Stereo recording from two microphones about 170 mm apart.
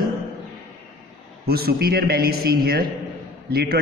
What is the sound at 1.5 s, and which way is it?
A man's voice, 65° right (ahead or behind).